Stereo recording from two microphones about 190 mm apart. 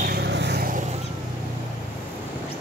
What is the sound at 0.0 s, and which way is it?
Vehicle, 60° right (ahead or behind).